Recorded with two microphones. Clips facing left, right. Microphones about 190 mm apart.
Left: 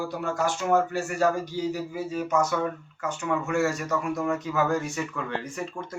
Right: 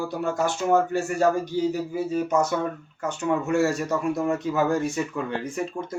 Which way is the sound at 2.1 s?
30° right (ahead or behind).